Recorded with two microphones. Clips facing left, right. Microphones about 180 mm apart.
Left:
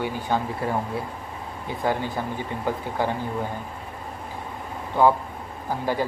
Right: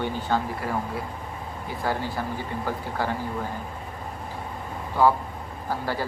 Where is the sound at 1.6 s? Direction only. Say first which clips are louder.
Left 3 dB; 20° left (ahead or behind).